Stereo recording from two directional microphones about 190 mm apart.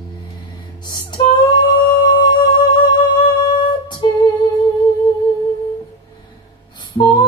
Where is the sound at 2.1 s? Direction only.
20° left (ahead or behind).